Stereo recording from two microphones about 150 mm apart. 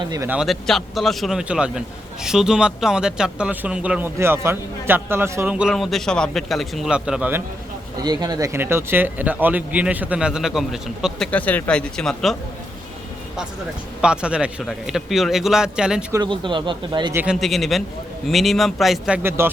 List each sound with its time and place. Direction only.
0.3 s speech: centre (ahead or behind)
8.0 s speech: 25° right (ahead or behind); by 11.3 s 5° right (ahead or behind)
11.3 s speech: 10° left (ahead or behind)
14.0 s speech: 5° right (ahead or behind)
16.2 s speech: 30° right (ahead or behind)
17.2 s speech: centre (ahead or behind)